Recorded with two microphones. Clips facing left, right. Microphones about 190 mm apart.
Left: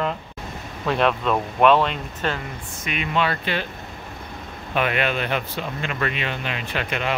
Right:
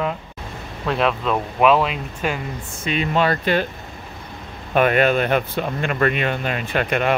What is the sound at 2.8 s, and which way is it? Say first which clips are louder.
Speech: right 4 dB; 35° right (ahead or behind).